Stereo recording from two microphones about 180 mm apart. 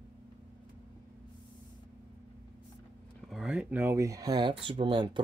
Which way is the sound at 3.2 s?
Centre (ahead or behind).